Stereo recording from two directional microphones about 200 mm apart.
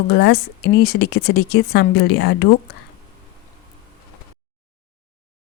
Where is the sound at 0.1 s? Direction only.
55° left (ahead or behind).